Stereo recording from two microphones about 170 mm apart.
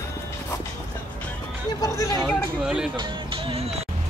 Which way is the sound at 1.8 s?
20° left (ahead or behind).